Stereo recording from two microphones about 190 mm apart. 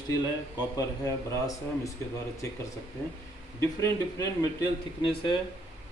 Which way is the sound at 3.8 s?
20° left (ahead or behind).